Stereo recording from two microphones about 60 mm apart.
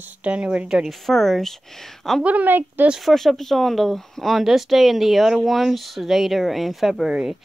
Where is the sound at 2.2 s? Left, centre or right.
Right.